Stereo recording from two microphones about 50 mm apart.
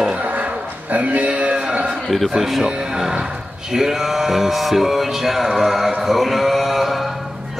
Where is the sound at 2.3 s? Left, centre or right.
Centre.